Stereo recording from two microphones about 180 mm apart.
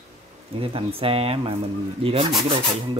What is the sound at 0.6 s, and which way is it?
Speech, 30° right (ahead or behind).